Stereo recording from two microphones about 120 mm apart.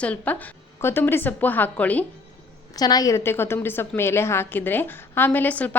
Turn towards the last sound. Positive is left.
turn(degrees=15)  # may be behind; listen again after turning